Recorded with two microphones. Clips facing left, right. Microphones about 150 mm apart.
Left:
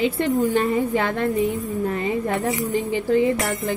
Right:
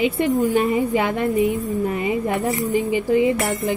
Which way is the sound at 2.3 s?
Centre (ahead or behind).